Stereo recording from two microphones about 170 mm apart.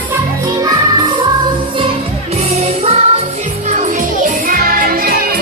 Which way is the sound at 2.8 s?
40° right (ahead or behind).